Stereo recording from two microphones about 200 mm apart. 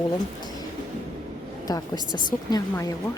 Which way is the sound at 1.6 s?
20° left (ahead or behind).